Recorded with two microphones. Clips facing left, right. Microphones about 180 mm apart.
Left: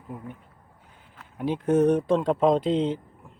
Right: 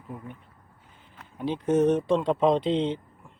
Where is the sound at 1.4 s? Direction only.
10° left (ahead or behind).